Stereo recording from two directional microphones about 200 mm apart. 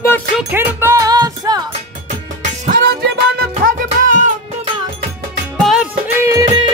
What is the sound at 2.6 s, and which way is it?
Music, 50° right (ahead or behind).